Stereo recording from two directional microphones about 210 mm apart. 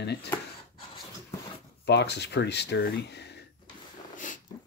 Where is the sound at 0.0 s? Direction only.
50° left (ahead or behind).